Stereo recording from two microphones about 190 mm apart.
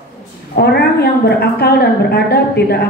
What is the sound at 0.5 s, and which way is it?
A woman's voice, 60° left (ahead or behind).